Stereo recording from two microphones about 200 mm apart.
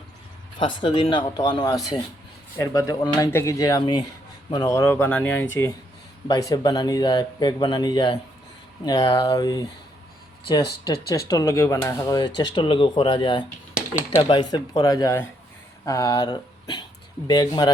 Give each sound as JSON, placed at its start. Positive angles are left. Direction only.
{"t": 0.6, "sound": "speech", "side_deg": 25}
{"t": 11.3, "sound": "speech", "side_deg": 15}